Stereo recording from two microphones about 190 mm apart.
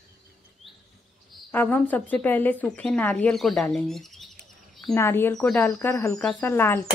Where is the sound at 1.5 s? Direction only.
10° left (ahead or behind).